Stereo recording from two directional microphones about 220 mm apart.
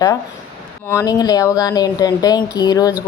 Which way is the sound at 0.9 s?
15° left (ahead or behind).